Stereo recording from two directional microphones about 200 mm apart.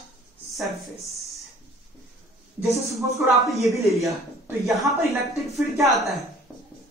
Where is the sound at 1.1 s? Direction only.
Centre (ahead or behind).